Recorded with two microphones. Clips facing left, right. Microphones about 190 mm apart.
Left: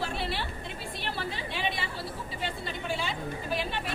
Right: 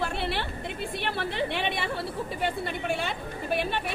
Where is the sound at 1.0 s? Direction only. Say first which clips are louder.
Right 6 dB; 60° right (ahead or behind).